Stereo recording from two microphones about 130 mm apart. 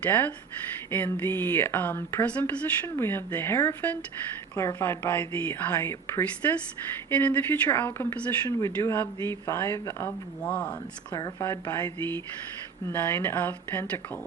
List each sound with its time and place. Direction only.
0.0 s speech: 15° left (ahead or behind)